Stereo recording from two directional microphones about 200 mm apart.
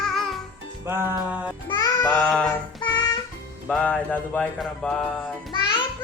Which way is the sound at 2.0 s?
10° left (ahead or behind).